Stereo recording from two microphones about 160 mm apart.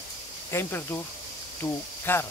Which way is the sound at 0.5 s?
15° left (ahead or behind).